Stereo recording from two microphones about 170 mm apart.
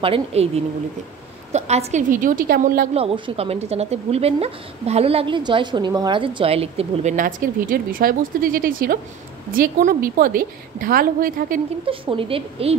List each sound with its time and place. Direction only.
0.0 s speech: 35° right (ahead or behind)
1.5 s a woman's voice: 40° right (ahead or behind)
2.9 s a woman's voice: 35° right (ahead or behind); by 11.6 s 55° right (ahead or behind)
11.8 s speech: 30° right (ahead or behind)